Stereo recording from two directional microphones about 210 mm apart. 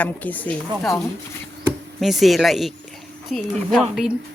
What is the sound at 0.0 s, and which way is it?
A woman's voice, 5° left (ahead or behind).